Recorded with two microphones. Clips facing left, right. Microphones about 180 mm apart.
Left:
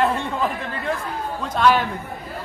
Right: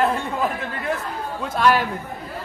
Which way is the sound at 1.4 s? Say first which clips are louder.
Left 1 dB; 5° right (ahead or behind).